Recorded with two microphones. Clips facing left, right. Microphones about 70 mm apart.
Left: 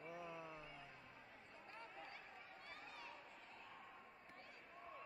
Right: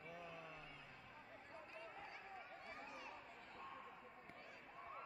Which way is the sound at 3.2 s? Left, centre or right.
Right.